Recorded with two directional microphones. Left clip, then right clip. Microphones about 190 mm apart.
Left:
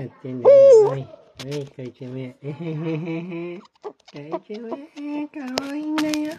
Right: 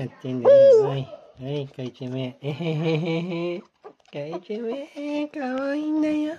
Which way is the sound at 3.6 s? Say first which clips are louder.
Left 7 dB; 25° left (ahead or behind).